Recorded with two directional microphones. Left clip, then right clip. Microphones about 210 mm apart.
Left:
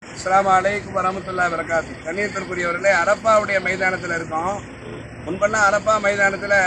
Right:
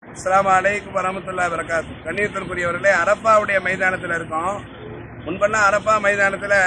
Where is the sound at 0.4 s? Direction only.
10° right (ahead or behind).